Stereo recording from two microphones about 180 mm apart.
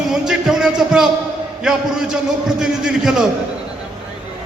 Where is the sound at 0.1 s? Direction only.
5° right (ahead or behind).